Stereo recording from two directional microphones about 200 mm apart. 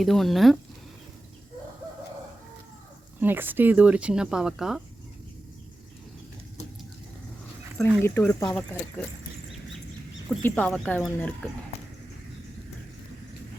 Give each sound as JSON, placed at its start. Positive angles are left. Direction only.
{"t": 0.0, "sound": "speech", "side_deg": 0}
{"t": 3.2, "sound": "speech", "side_deg": -10}
{"t": 7.8, "sound": "speech", "side_deg": 5}
{"t": 10.4, "sound": "speech", "side_deg": 5}